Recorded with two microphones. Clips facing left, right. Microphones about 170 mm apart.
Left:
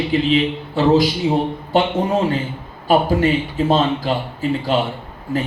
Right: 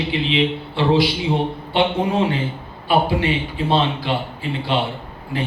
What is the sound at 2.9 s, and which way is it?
A man's voice, 45° left (ahead or behind).